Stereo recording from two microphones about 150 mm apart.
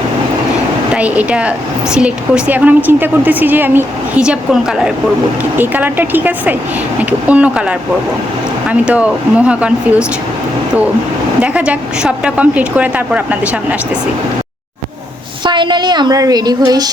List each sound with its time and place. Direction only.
0.9 s a woman's voice: 10° right (ahead or behind)
11.3 s a woman's voice: 5° right (ahead or behind)
15.4 s a woman's voice: 30° right (ahead or behind)